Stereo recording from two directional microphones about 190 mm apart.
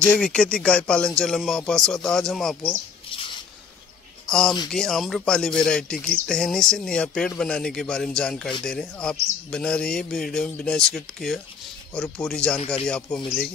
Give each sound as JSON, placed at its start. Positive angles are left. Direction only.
{"t": 0.0, "sound": "speech", "side_deg": 5}
{"t": 3.1, "sound": "squish", "side_deg": 25}
{"t": 4.3, "sound": "speech", "side_deg": 5}